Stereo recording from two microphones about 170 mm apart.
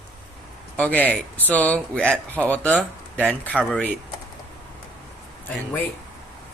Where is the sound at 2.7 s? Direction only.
10° right (ahead or behind).